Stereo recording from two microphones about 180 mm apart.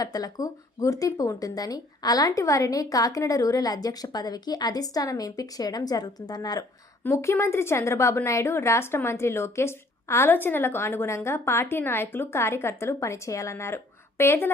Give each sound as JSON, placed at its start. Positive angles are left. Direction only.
{"t": 0.0, "sound": "speech", "side_deg": 20}